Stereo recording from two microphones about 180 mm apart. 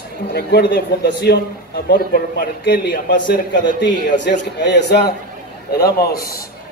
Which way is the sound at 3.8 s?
75° left (ahead or behind).